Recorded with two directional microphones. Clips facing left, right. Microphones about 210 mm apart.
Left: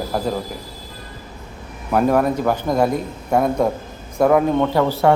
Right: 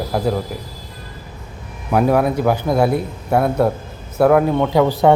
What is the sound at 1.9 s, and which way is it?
A man's voice, 10° right (ahead or behind).